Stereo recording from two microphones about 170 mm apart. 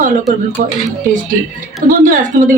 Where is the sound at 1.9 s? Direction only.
55° right (ahead or behind).